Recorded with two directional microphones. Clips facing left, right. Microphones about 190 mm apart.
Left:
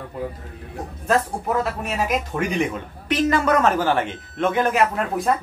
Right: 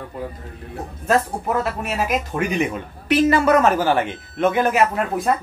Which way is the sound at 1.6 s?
5° right (ahead or behind).